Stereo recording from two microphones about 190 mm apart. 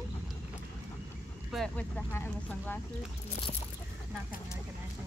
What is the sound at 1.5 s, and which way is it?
Speech, 5° left (ahead or behind).